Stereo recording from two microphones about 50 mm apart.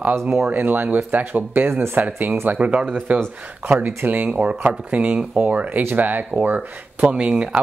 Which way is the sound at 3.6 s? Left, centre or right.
Right.